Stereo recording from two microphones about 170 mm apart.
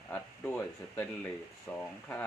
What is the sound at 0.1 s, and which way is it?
Speech, 10° left (ahead or behind).